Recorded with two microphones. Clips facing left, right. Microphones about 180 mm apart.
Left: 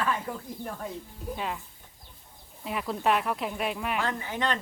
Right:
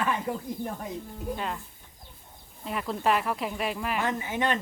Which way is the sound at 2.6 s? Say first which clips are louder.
Even; centre (ahead or behind).